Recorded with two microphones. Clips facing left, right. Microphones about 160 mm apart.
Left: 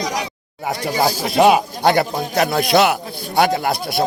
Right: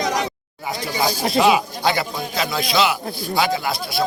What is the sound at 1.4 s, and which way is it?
A man's voice, 55° left (ahead or behind).